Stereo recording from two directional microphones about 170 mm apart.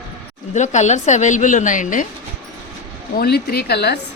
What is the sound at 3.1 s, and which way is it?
Speech, 65° left (ahead or behind).